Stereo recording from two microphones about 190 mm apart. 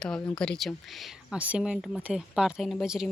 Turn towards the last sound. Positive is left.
turn(degrees=0)  # may be behind; listen again after turning